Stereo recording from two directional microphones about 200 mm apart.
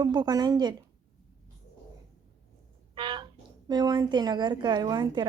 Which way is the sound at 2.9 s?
25° right (ahead or behind).